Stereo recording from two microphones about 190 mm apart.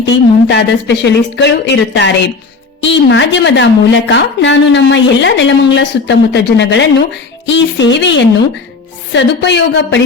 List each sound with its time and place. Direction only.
0.0 s a woman's voice: 65° left (ahead or behind)